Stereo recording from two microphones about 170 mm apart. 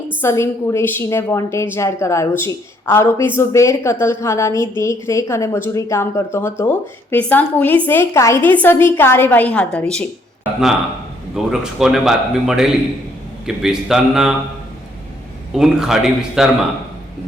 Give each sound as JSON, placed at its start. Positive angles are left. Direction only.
{"t": 0.2, "sound": "a woman's voice", "side_deg": 15}
{"t": 11.3, "sound": "a man's voice", "side_deg": -5}
{"t": 15.5, "sound": "a man's voice", "side_deg": -5}